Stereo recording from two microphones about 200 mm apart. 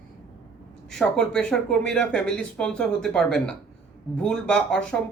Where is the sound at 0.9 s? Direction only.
5° left (ahead or behind).